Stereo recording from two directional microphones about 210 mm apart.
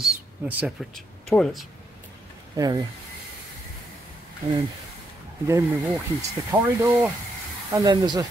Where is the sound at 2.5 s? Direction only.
15° right (ahead or behind).